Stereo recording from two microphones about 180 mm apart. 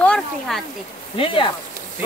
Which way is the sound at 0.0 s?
5° left (ahead or behind).